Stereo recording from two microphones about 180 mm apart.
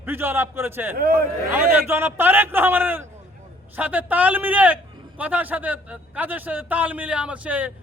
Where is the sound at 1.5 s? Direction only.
10° right (ahead or behind).